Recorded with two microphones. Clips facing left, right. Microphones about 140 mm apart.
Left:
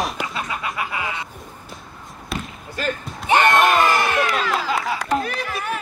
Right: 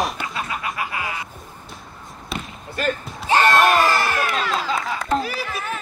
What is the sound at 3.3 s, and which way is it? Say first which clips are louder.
Speech: even; 20° left (ahead or behind).